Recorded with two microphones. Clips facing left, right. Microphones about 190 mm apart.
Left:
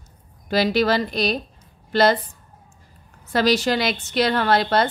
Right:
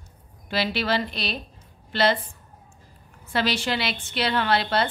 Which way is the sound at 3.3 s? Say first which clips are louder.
Left 6 dB; 40° left (ahead or behind).